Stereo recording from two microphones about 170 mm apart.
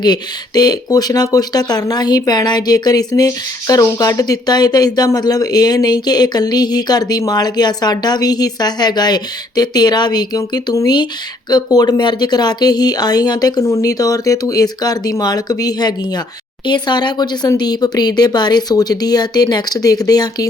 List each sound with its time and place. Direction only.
0.0 s speech: 25° left (ahead or behind)